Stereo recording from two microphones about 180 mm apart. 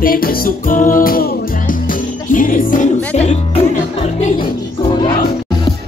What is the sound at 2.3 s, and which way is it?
Speech, 50° left (ahead or behind).